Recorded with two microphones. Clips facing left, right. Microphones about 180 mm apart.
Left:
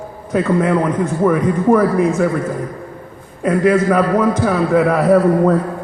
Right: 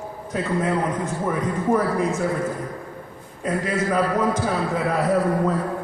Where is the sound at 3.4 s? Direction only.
65° left (ahead or behind).